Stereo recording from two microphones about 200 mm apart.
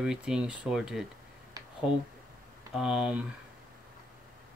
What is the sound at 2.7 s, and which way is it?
Speech, 5° right (ahead or behind).